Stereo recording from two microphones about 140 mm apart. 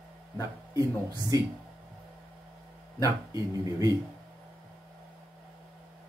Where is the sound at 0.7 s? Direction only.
25° right (ahead or behind).